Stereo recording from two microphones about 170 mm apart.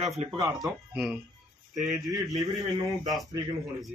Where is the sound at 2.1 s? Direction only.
20° right (ahead or behind).